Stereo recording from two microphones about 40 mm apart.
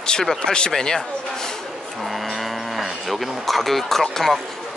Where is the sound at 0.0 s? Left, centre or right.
Centre.